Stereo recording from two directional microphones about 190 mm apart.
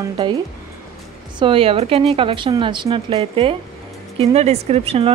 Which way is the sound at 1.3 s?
25° right (ahead or behind).